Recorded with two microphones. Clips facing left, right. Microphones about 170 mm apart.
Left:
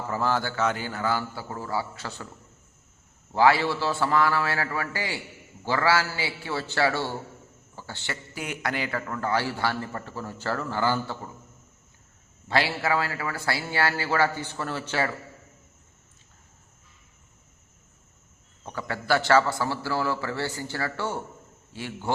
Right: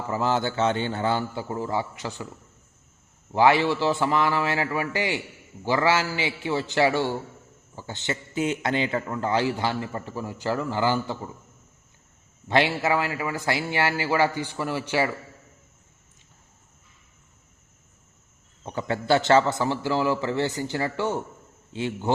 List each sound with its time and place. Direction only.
0.1 s a man's voice: 20° right (ahead or behind)
3.3 s a man's voice: 20° right (ahead or behind)
12.5 s a man's voice: 20° right (ahead or behind)
18.6 s a man's voice: 20° right (ahead or behind)